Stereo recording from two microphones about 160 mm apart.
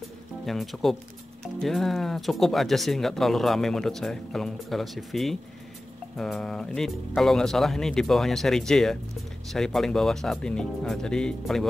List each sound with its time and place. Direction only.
0.5 s speech: centre (ahead or behind)